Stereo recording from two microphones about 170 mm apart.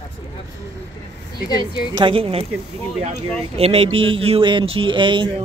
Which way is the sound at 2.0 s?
35° right (ahead or behind).